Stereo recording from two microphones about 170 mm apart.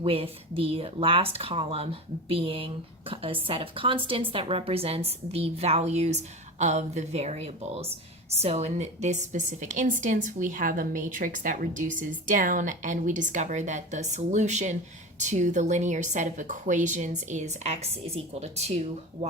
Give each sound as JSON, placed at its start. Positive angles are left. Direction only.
{"t": 0.0, "sound": "a woman's voice", "side_deg": -35}